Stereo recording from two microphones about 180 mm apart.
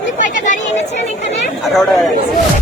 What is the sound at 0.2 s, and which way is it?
Chatter, 45° left (ahead or behind).